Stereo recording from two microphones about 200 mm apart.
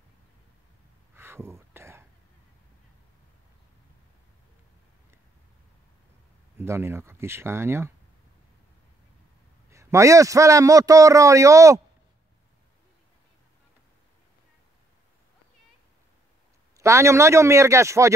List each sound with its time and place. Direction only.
1.1 s a sound: 10° right (ahead or behind)
6.6 s a man's voice: 10° right (ahead or behind)
9.7 s a man's voice: 15° right (ahead or behind)
16.7 s a man's voice: 15° right (ahead or behind)